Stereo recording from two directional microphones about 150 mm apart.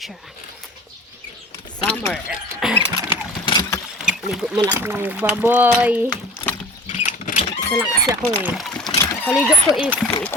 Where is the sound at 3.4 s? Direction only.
30° left (ahead or behind).